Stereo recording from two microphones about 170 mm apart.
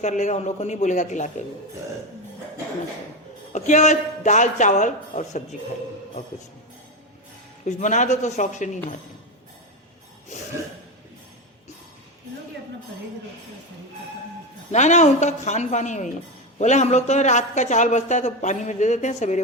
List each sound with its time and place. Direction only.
0.0 s a man's voice: 45° left (ahead or behind)
3.5 s a man's voice: 45° left (ahead or behind)
7.6 s a man's voice: 45° left (ahead or behind)
10.3 s a man's voice: 45° left (ahead or behind)
14.7 s a man's voice: 45° left (ahead or behind)